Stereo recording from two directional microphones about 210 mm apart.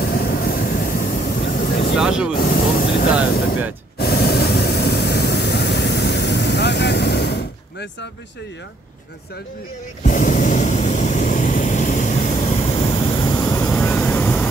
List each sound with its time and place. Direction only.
0.0 s vehicle: 45° left (ahead or behind)
2.0 s speech: 5° right (ahead or behind)
2.3 s spray: 45° left (ahead or behind)
4.0 s vehicle: 50° left (ahead or behind)
10.0 s vehicle: 40° left (ahead or behind); by 14.5 s 5° left (ahead or behind)